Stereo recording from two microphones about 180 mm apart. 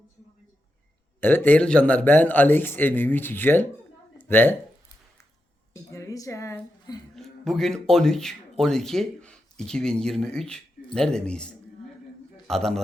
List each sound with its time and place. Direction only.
1.2 s a man's voice: 10° left (ahead or behind)
5.7 s a man's voice: 15° left (ahead or behind)
7.2 s speech: centre (ahead or behind)